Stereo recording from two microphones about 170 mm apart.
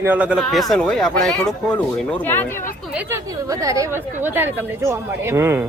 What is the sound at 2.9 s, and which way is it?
A woman's voice, 10° right (ahead or behind).